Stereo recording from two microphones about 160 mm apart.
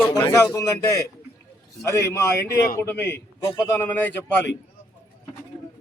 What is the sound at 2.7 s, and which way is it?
A man's voice, 15° left (ahead or behind).